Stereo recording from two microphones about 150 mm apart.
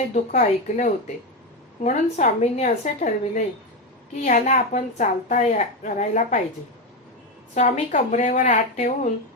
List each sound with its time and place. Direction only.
0.1 s a woman's voice: 55° left (ahead or behind)
7.5 s a woman's voice: 55° left (ahead or behind)